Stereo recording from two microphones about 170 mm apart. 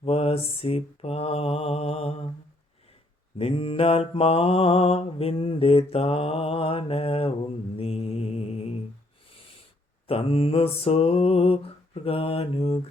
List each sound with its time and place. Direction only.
0.0 s mantra: 35° left (ahead or behind)
3.3 s mantra: 35° left (ahead or behind)
10.1 s mantra: 35° left (ahead or behind)